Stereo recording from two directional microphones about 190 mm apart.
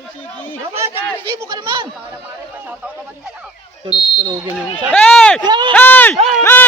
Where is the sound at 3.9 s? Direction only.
25° left (ahead or behind).